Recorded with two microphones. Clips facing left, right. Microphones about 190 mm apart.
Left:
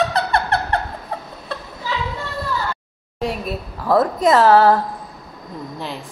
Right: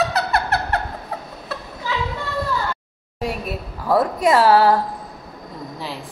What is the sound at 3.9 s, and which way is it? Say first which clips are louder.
Speech: left 2 dB; 10° right (ahead or behind).